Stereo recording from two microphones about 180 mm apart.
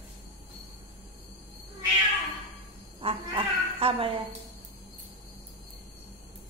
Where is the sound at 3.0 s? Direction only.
30° right (ahead or behind).